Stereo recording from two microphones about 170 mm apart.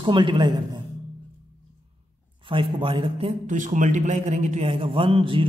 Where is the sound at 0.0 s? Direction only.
30° right (ahead or behind).